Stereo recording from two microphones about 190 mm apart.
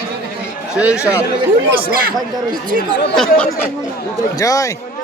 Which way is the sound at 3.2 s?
5° left (ahead or behind).